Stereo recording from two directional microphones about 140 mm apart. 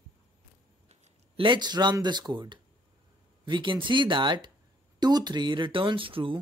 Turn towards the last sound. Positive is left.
turn(degrees=-40)  # may be behind; listen again after turning